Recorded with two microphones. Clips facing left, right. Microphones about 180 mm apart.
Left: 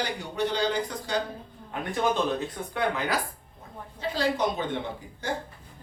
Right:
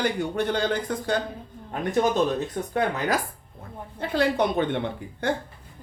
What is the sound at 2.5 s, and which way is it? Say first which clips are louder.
Speech: right 3 dB; 45° right (ahead or behind).